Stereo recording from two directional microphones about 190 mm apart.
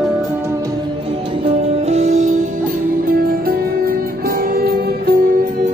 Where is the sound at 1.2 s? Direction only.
30° right (ahead or behind).